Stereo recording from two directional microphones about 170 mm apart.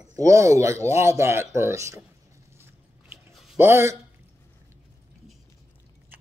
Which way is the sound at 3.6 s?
15° right (ahead or behind).